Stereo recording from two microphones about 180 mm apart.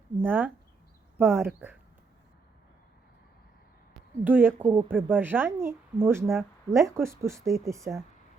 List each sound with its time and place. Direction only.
0.2 s speech: 10° right (ahead or behind)
3.9 s a sound: 10° right (ahead or behind)
4.6 s speech: 30° right (ahead or behind)
4.9 s speech: 10° right (ahead or behind)